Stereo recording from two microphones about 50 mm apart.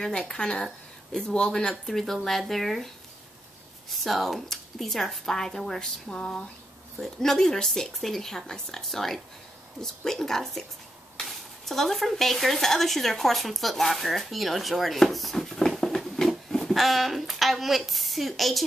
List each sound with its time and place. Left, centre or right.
0.0 s a woman's voice: centre
3.9 s a woman's voice: centre